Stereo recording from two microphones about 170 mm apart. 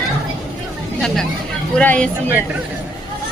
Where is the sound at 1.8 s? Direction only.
5° left (ahead or behind).